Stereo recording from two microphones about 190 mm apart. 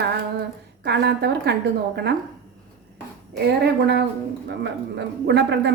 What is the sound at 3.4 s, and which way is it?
Speech, 60° right (ahead or behind).